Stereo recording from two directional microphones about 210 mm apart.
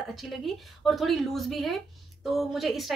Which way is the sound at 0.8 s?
Centre (ahead or behind).